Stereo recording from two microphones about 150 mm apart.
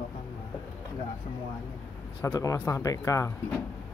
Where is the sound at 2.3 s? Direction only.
20° left (ahead or behind).